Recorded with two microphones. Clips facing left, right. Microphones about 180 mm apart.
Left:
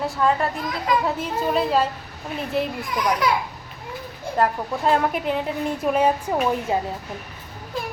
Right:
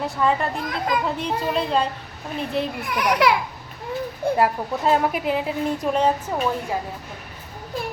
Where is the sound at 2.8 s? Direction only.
65° right (ahead or behind).